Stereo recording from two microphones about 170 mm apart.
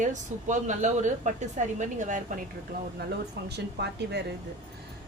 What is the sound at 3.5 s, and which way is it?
Speech, 80° right.